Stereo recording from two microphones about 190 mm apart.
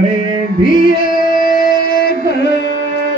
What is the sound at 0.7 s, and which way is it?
Music, 50° left (ahead or behind).